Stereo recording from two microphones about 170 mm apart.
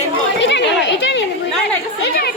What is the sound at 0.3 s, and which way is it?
Children playing, 90° left.